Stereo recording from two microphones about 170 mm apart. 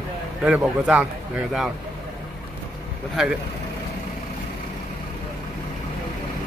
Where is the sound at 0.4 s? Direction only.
10° right (ahead or behind).